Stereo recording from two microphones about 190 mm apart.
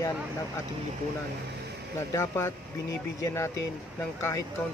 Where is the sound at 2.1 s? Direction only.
15° left (ahead or behind).